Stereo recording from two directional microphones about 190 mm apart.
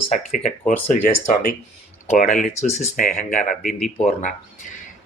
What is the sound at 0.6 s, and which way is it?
Speech, 40° left (ahead or behind).